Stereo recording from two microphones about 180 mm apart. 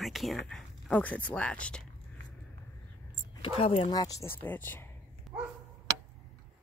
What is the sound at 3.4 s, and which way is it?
Speech, 35° left (ahead or behind).